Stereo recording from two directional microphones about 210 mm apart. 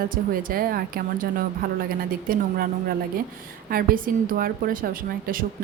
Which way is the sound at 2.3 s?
45° right (ahead or behind).